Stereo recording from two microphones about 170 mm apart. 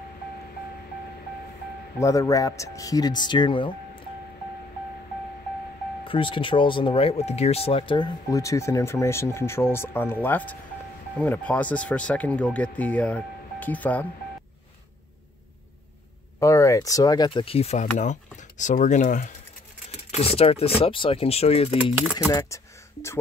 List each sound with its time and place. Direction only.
2.0 s speech: 20° left (ahead or behind)
6.0 s speech: 30° left (ahead or behind); by 14.0 s 10° left (ahead or behind)
16.3 s speech: 20° left (ahead or behind); by 21.9 s 35° left (ahead or behind)
21.9 s speech: 10° right (ahead or behind)
22.3 s speech: 15° left (ahead or behind)